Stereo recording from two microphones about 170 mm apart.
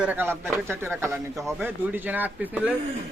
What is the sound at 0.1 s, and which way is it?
Speech, 15° right (ahead or behind).